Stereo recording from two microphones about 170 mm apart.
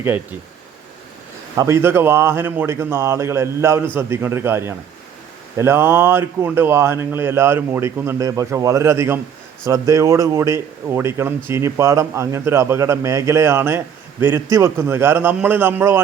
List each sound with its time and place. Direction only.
0.0 s speech: 10° right (ahead or behind)
1.5 s speech: 15° right (ahead or behind)